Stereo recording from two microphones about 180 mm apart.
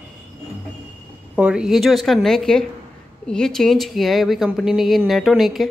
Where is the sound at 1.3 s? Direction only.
5° right (ahead or behind).